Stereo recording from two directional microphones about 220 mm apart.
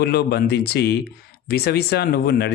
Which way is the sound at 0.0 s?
45° left (ahead or behind).